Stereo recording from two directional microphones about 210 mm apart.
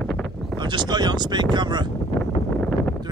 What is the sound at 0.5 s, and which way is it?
Speech, 20° right (ahead or behind).